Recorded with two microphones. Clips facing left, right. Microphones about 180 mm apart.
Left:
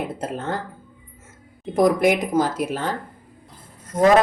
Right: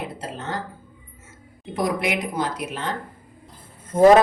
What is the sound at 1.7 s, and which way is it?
Speech, 45° left (ahead or behind).